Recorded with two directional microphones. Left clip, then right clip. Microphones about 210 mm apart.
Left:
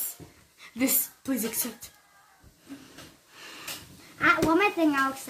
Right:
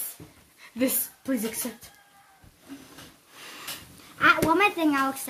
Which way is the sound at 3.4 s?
35° right (ahead or behind).